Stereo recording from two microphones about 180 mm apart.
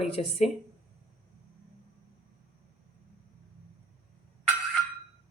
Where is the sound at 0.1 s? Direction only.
35° left (ahead or behind).